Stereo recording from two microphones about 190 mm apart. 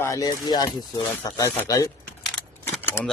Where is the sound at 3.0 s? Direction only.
15° left (ahead or behind).